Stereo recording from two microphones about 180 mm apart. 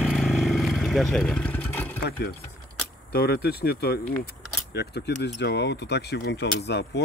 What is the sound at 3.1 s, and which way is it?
Speech, 60° left (ahead or behind).